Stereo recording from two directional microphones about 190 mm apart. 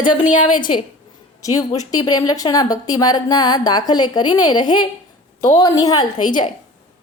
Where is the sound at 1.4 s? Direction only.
20° left (ahead or behind).